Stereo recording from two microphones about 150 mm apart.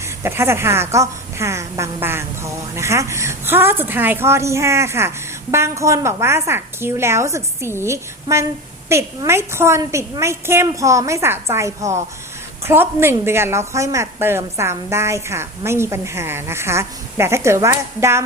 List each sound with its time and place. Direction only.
0.2 s a woman's voice: 15° right (ahead or behind)